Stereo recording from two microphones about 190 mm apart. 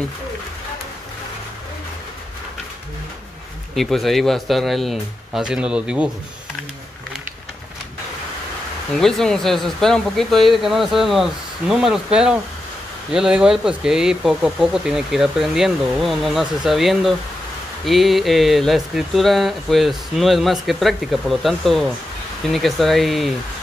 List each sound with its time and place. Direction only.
3.7 s speech: centre (ahead or behind)
8.9 s speech: centre (ahead or behind)